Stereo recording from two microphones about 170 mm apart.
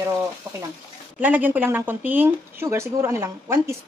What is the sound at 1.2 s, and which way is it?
Speech, 10° right (ahead or behind).